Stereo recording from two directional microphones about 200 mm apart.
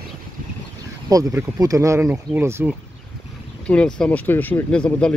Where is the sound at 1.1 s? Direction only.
15° right (ahead or behind).